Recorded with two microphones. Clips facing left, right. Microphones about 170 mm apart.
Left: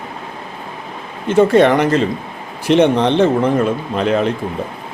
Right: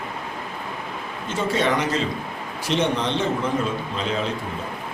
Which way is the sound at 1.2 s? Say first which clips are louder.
Left 12 dB; 60° left (ahead or behind).